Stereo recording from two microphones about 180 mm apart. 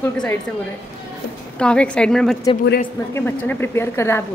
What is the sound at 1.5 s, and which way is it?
A woman's voice, 5° left (ahead or behind).